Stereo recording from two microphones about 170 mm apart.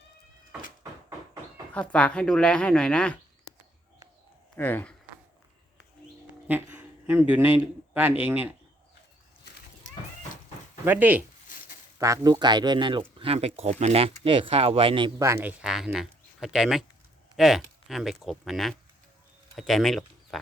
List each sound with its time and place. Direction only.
1.7 s speech: 5° left (ahead or behind)
4.5 s speech: 10° left (ahead or behind)
6.5 s a man's voice: 10° right (ahead or behind)
10.8 s speech: 10° right (ahead or behind); by 15.1 s 30° right (ahead or behind)
15.2 s speech: 15° right (ahead or behind)